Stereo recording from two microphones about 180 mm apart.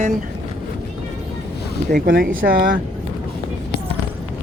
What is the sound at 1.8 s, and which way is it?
Speech, 55° right (ahead or behind).